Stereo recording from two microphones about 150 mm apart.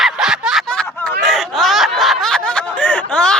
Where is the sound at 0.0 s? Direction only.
5° right (ahead or behind).